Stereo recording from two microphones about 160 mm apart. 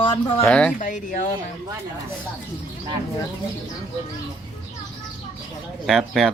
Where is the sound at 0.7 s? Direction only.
55° left (ahead or behind).